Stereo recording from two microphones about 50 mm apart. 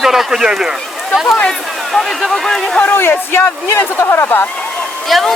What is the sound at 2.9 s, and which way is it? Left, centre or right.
Speech, left.